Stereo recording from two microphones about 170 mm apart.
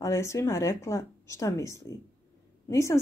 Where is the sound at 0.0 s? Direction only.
15° left (ahead or behind).